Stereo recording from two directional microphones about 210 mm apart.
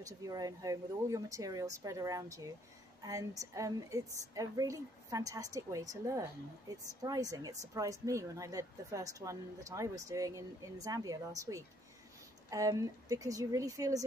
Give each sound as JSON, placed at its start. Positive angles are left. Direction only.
{"t": 0.0, "sound": "a woman's voice", "side_deg": -15}